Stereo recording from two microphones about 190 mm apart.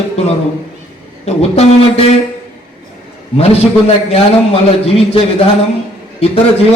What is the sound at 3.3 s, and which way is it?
Speech, 30° left (ahead or behind).